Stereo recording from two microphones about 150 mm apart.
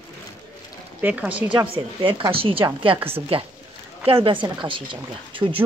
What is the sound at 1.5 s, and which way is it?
Speech, 35° right (ahead or behind).